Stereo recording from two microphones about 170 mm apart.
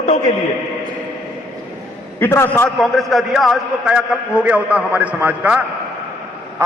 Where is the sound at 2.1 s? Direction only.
15° left (ahead or behind).